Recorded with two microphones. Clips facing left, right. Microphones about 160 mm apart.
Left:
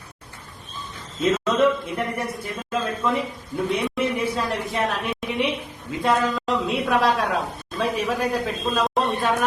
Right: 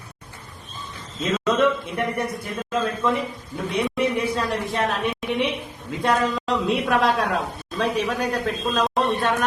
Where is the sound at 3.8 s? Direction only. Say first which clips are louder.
Right 1 dB; centre (ahead or behind).